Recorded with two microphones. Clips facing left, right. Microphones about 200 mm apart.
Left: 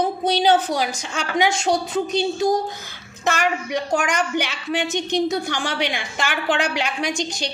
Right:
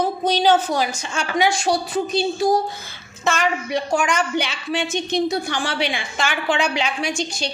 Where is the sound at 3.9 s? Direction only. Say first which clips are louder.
Right 1 dB; 15° left (ahead or behind).